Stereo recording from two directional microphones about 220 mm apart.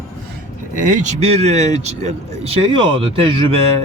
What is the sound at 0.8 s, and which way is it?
Speech, 35° right (ahead or behind).